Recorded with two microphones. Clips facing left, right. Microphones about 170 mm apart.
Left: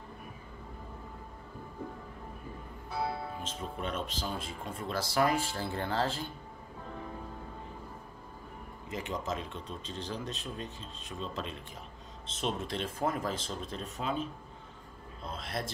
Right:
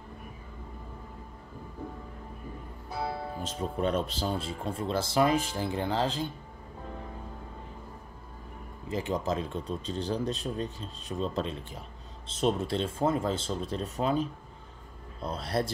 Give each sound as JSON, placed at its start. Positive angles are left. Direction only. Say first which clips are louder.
{"t": 3.3, "sound": "speech", "louder": "right 6 dB", "side_deg": -35}
{"t": 8.8, "sound": "speech", "louder": "right 6 dB", "side_deg": -35}